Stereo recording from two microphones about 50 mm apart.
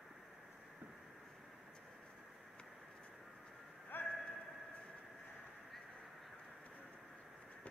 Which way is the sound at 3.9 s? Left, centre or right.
Left.